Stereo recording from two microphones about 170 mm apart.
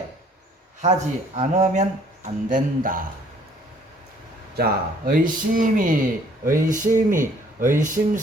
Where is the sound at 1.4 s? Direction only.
40° right (ahead or behind).